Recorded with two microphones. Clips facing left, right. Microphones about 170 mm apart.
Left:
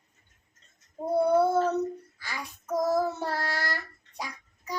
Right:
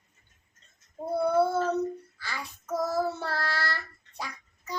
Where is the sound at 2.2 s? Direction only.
15° left (ahead or behind).